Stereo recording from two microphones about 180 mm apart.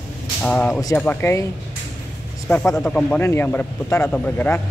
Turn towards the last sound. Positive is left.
turn(degrees=10)  # may be behind; listen again after turning